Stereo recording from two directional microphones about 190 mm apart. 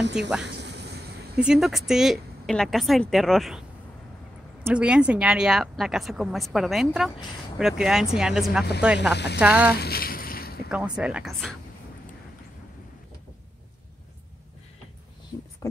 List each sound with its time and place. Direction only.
0.0 s speech: 65° right (ahead or behind)
0.5 s vehicle: 60° right (ahead or behind)
1.4 s a woman's voice: 5° right (ahead or behind)
4.6 s a woman's voice: 5° right (ahead or behind)
9.1 s speech: 65° left (ahead or behind)
9.4 s speech: 10° right (ahead or behind)
9.8 s a sound: 55° left (ahead or behind)
10.7 s a woman's voice: 5° right (ahead or behind)